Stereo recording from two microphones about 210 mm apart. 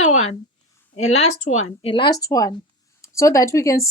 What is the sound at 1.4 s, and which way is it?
Speech, 90° left.